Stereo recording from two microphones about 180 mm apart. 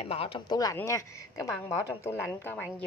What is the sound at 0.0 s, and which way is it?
A woman's voice, 30° left (ahead or behind).